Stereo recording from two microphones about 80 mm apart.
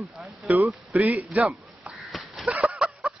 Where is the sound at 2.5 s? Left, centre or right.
Centre.